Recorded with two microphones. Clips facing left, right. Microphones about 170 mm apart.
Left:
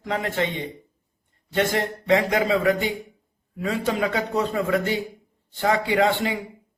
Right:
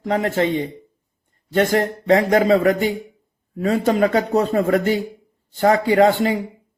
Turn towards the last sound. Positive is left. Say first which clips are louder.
# right 6 dB
turn(degrees=-40)  # may be behind; listen again after turning